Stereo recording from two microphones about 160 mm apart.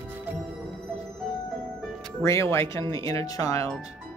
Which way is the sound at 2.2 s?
15° left (ahead or behind).